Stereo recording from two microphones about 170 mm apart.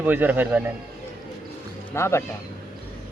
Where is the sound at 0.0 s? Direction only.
10° right (ahead or behind).